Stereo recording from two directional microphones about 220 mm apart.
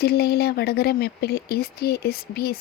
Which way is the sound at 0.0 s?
45° left (ahead or behind).